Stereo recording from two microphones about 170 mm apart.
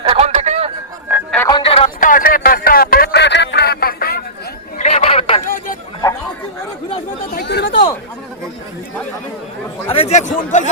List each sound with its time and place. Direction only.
0.0 s a sound: 35° right (ahead or behind)
1.5 s music: 30° left (ahead or behind)
2.0 s a sound: 50° left (ahead or behind)
4.8 s chatter: 40° left (ahead or behind)
7.3 s chatter: 75° left (ahead or behind)
9.8 s speech: 35° left (ahead or behind)